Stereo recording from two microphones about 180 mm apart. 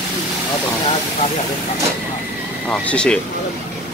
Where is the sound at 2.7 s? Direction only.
5° left (ahead or behind).